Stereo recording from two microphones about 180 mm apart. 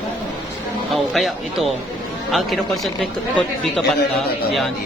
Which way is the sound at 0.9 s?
Centre (ahead or behind).